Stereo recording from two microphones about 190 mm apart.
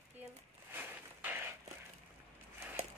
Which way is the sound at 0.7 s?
10° right (ahead or behind).